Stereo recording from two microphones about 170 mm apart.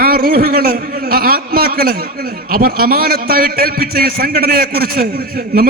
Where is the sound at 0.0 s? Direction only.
60° right (ahead or behind).